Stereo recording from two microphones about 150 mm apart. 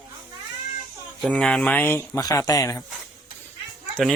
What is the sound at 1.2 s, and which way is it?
Speech, 5° left (ahead or behind).